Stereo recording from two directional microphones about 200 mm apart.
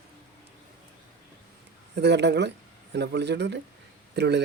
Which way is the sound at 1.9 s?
60° right (ahead or behind).